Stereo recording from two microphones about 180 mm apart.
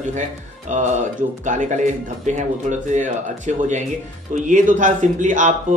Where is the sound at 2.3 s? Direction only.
40° right (ahead or behind).